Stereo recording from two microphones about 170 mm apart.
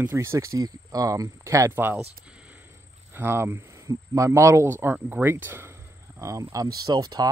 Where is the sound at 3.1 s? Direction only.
15° right (ahead or behind).